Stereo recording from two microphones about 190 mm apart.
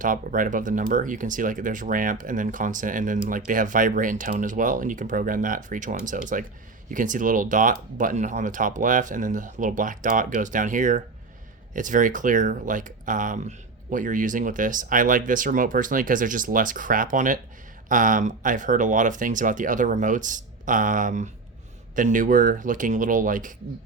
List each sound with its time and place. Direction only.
0.0 s speech: 45° right (ahead or behind)